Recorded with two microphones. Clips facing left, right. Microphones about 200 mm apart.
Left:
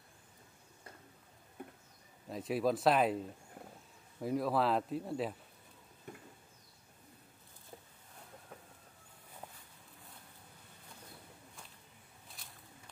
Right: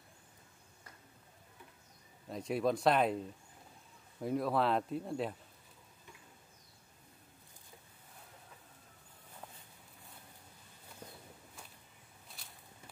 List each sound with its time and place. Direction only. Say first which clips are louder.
1.6 s a sound: left 11 dB; 50° left (ahead or behind)
2.2 s speech: even; centre (ahead or behind)
4.2 s speech: even; centre (ahead or behind)